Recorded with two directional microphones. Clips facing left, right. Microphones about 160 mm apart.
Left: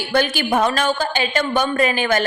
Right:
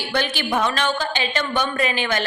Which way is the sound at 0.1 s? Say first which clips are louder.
Left 5 dB; 45° left (ahead or behind).